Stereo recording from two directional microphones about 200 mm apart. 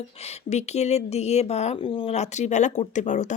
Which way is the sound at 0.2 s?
35° left (ahead or behind).